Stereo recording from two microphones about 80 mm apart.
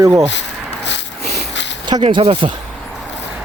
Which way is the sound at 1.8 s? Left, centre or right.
Right.